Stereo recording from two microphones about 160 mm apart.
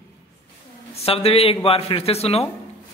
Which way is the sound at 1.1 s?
40° left (ahead or behind).